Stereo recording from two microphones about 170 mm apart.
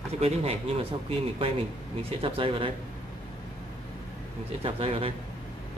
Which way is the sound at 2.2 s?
30° right (ahead or behind).